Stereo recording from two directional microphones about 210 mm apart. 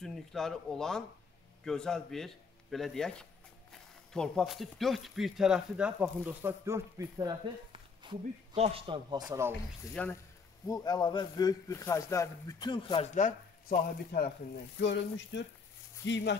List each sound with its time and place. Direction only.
0.0 s speech: centre (ahead or behind)
10.0 s speech: 5° left (ahead or behind)
10.7 s a man's voice: 20° left (ahead or behind)
13.1 s speech: 40° left (ahead or behind)
14.8 s speech: 55° left (ahead or behind)